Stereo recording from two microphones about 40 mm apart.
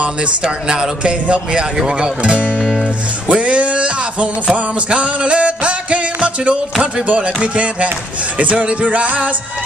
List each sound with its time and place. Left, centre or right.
0.0 s speech: right
0.4 s speech: centre
1.2 s speech: right
1.8 s speech: centre
2.6 s speech: centre
3.3 s a sound: right
7.1 s music: right